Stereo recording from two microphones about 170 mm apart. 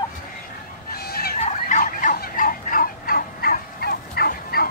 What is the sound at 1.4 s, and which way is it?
Fowl, 50° left (ahead or behind).